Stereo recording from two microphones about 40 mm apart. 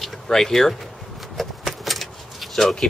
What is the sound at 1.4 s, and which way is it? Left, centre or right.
Keys jangling, centre.